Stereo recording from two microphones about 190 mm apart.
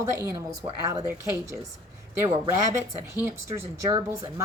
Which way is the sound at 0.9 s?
15° right (ahead or behind).